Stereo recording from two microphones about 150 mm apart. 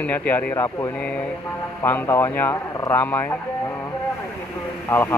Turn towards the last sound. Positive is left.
turn(degrees=15)  # may be behind; listen again after turning